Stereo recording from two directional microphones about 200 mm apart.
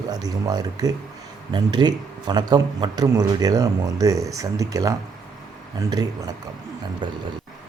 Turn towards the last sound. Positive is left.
turn(degrees=-25)  # may be behind; listen again after turning